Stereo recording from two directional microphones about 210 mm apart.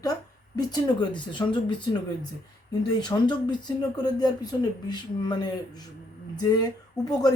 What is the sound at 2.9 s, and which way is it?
Speech, 20° left (ahead or behind).